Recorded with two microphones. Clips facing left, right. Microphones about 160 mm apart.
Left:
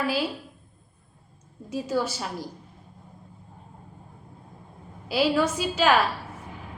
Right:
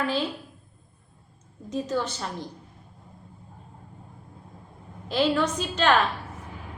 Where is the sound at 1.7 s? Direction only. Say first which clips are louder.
Left 1 dB; 5° left (ahead or behind).